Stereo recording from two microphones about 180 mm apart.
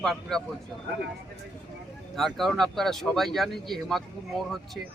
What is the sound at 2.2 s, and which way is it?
Speech, centre (ahead or behind).